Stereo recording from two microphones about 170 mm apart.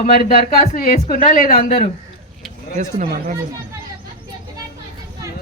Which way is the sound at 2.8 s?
50° right (ahead or behind).